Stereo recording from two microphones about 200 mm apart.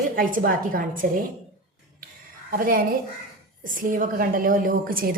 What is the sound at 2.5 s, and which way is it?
A woman's voice, 45° right (ahead or behind).